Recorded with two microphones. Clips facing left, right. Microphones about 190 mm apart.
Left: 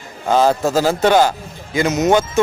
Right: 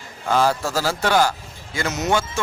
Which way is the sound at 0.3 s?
20° left (ahead or behind).